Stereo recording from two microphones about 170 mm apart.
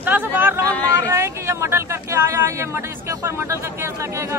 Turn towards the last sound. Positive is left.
turn(degrees=-15)  # may be behind; listen again after turning